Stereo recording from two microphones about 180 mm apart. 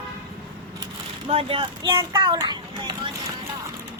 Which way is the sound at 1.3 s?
30° right (ahead or behind).